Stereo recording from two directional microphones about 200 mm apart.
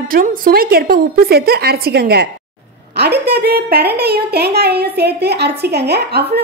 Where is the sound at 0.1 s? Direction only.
45° right (ahead or behind).